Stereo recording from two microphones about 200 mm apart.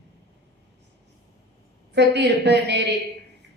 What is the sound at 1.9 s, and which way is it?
Speech, 60° right (ahead or behind).